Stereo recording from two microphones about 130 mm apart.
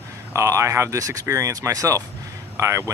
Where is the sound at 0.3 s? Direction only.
25° right (ahead or behind).